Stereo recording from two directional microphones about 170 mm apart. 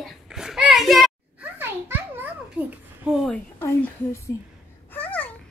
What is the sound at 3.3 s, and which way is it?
A woman's voice, 10° left (ahead or behind).